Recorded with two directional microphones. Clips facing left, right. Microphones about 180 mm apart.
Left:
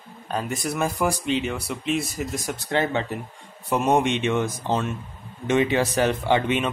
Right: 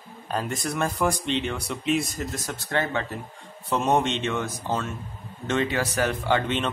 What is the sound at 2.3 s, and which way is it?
Speech, 15° left (ahead or behind).